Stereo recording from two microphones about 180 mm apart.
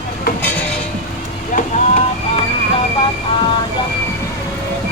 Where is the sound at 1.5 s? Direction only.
45° left (ahead or behind).